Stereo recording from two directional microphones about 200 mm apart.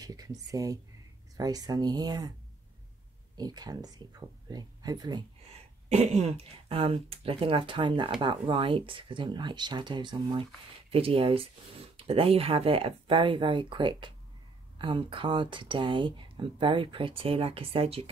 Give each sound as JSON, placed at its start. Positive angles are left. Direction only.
{"t": 0.0, "sound": "speech", "side_deg": -20}
{"t": 3.3, "sound": "speech", "side_deg": -20}
{"t": 5.9, "sound": "speech", "side_deg": -35}